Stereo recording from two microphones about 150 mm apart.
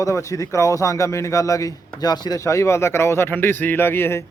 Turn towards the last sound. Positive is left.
turn(degrees=15)  # may be behind; listen again after turning